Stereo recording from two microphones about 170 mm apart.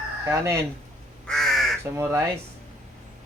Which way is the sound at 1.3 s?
Centre (ahead or behind).